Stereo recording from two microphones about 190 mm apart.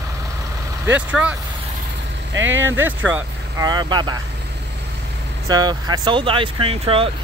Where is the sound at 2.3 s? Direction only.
85° right.